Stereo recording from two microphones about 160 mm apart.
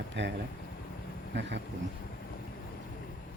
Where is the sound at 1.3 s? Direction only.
90° right.